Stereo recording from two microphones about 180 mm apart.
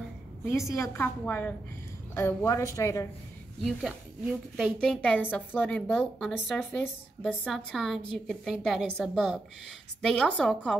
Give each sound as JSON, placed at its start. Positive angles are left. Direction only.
{"t": 0.5, "sound": "a woman's voice", "side_deg": 15}
{"t": 3.6, "sound": "a woman's voice", "side_deg": -5}
{"t": 4.7, "sound": "a woman's voice", "side_deg": 5}